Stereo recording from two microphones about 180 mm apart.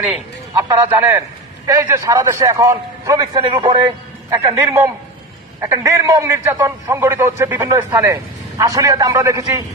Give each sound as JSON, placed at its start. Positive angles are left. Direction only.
{"t": 0.0, "sound": "a man's voice", "side_deg": -10}